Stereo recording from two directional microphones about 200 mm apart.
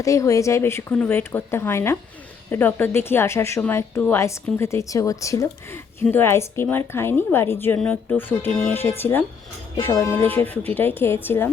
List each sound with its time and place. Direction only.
0.0 s a woman's voice: 15° left (ahead or behind)